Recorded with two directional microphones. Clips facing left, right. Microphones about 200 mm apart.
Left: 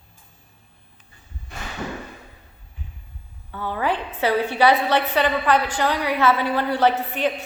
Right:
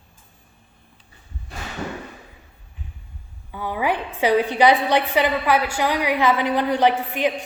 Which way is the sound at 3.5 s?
10° right (ahead or behind).